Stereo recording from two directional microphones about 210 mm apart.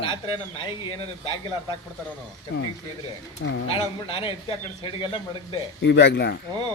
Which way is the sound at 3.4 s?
60° left (ahead or behind).